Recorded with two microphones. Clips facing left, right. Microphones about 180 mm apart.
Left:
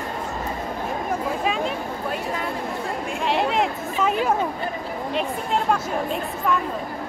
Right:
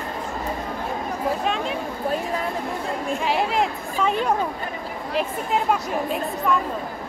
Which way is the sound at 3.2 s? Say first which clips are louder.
Left 2 dB; centre (ahead or behind).